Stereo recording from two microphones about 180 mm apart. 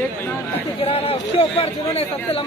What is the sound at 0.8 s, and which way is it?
A man's voice, 35° left (ahead or behind).